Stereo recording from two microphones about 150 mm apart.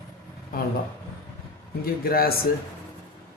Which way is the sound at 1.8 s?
90° left.